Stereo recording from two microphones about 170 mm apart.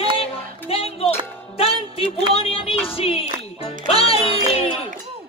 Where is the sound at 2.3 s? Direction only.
35° left (ahead or behind).